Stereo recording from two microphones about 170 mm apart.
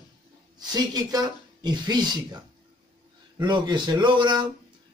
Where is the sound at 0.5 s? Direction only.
25° right (ahead or behind).